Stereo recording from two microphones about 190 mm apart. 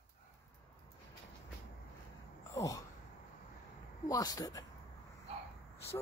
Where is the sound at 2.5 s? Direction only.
20° left (ahead or behind).